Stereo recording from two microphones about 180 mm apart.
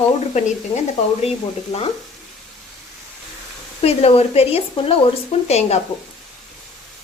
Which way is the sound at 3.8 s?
35° left (ahead or behind).